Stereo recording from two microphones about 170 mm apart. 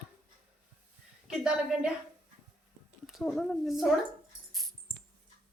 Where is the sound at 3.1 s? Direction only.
Centre (ahead or behind).